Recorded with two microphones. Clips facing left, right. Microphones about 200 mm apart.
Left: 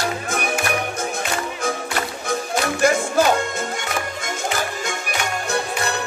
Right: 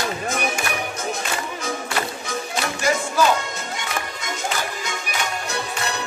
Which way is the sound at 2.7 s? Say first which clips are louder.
Left 5 dB; 55° left (ahead or behind).